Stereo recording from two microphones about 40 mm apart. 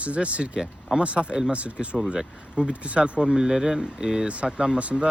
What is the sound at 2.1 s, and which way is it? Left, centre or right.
Speech, centre.